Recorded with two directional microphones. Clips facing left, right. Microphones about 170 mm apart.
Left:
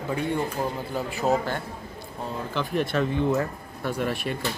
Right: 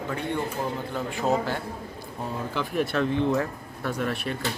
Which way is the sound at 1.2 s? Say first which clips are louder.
Left 1 dB; 5° right (ahead or behind).